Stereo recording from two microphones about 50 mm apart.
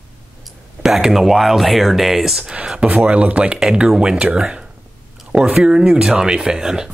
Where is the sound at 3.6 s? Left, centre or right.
Centre.